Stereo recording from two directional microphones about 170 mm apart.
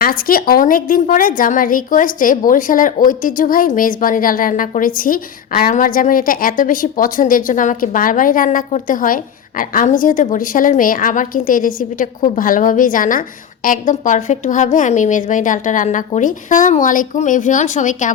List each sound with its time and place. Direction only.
0.0 s a woman's voice: 60° left (ahead or behind)